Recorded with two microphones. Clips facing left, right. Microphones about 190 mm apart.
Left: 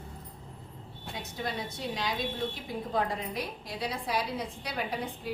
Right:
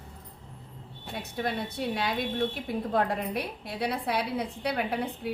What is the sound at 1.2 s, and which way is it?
A woman's voice, 60° right (ahead or behind).